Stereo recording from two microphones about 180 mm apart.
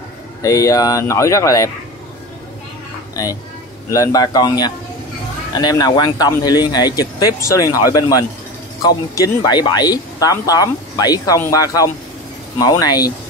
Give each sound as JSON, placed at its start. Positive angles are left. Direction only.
{"t": 0.4, "sound": "speech", "side_deg": 20}
{"t": 3.2, "sound": "speech", "side_deg": 20}